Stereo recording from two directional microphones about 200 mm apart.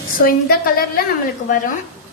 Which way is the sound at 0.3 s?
45° left (ahead or behind).